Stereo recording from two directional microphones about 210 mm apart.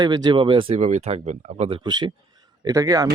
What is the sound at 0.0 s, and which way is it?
A man's voice, 20° right (ahead or behind).